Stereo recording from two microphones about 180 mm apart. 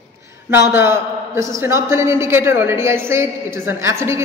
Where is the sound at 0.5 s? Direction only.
15° right (ahead or behind).